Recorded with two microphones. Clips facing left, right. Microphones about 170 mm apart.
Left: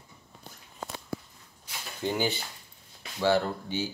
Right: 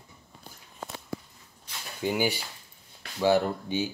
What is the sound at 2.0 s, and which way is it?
Speech, 10° right (ahead or behind).